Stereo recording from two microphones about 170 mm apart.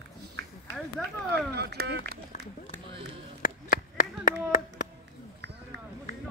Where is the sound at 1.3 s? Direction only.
75° right (ahead or behind).